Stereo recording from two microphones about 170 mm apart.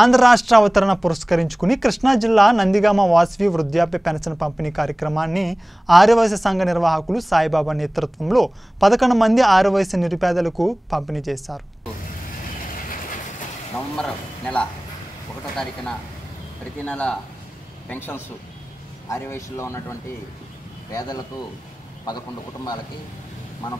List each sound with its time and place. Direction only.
0.0 s speech: centre (ahead or behind)
13.9 s speech: 5° left (ahead or behind)
16.8 s speech: 5° left (ahead or behind); by 21.2 s 25° left (ahead or behind)